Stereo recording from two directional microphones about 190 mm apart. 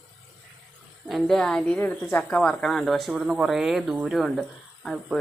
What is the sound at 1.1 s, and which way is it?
A woman's voice, centre (ahead or behind).